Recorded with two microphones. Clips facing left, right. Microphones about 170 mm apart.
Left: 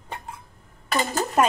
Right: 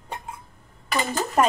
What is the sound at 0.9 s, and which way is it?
Speech, 45° left (ahead or behind).